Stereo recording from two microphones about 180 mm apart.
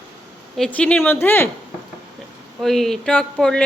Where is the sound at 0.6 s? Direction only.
5° left (ahead or behind).